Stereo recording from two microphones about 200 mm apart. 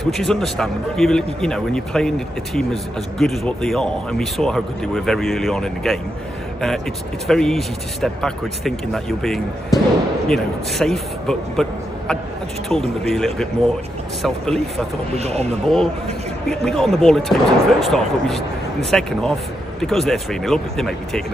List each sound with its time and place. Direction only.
0.0 s a man's voice: centre (ahead or behind)
7.2 s a man's voice: centre (ahead or behind)
12.6 s a man's voice: centre (ahead or behind)
15.1 s speech: 30° right (ahead or behind)
15.6 s a man's voice: centre (ahead or behind)